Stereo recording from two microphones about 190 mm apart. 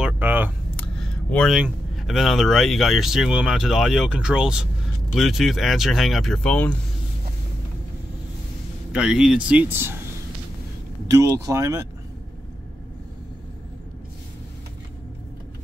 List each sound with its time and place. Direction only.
0.0 s camera: 10° right (ahead or behind)
0.7 s a sound: 5° left (ahead or behind)
1.6 s speech: centre (ahead or behind)
8.9 s speech: 5° right (ahead or behind)
11.1 s speech: 20° right (ahead or behind)